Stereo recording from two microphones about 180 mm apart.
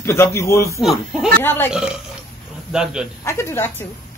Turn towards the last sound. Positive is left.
turn(degrees=15)  # may be behind; listen again after turning